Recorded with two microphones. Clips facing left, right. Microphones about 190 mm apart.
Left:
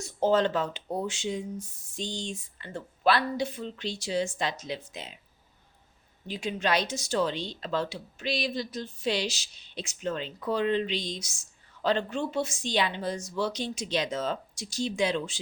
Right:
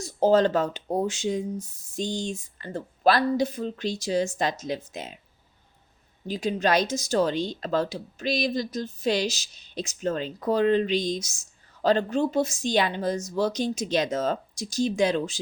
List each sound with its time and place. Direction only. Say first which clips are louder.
0.0 s speech: right 4 dB; 40° right (ahead or behind)
6.2 s speech: right 5 dB; 40° right (ahead or behind)